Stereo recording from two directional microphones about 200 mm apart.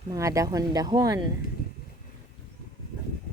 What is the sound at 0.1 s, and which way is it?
Speech, 15° right (ahead or behind).